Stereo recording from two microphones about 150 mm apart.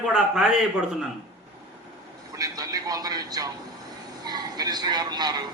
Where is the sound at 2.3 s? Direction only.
25° right (ahead or behind).